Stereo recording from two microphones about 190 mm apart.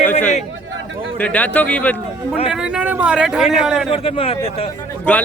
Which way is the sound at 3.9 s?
30° left (ahead or behind).